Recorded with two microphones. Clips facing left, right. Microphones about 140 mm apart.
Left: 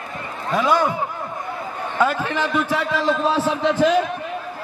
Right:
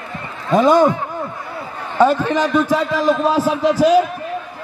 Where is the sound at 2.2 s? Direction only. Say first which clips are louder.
Right 5 dB; 15° right (ahead or behind).